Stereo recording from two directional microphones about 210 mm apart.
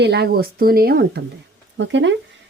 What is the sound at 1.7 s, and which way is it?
Speech, 60° right (ahead or behind).